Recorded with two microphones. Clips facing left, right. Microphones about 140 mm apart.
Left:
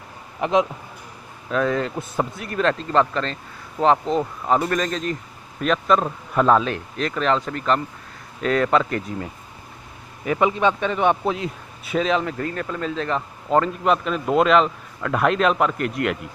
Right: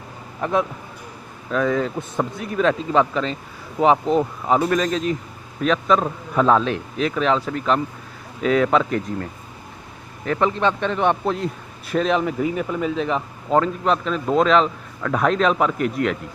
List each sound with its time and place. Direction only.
0.4 s a man's voice: 20° left (ahead or behind)
1.5 s a man's voice: centre (ahead or behind)